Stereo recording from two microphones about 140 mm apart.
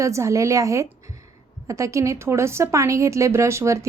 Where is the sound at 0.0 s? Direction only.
20° right (ahead or behind).